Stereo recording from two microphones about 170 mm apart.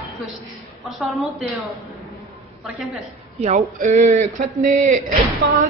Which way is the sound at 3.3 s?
45° right (ahead or behind).